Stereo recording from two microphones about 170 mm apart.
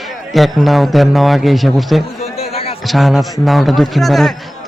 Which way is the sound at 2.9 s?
Centre (ahead or behind).